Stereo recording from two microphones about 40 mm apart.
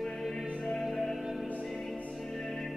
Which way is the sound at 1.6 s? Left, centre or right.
Centre.